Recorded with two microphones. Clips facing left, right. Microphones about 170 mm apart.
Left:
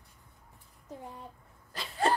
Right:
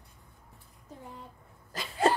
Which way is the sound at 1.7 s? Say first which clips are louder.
Right 2 dB; 45° right (ahead or behind).